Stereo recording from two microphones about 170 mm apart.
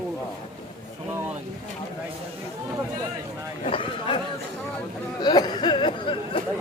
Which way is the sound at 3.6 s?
30° left (ahead or behind).